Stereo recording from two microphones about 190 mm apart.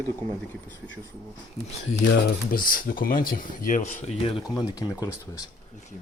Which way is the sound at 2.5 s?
50° left (ahead or behind).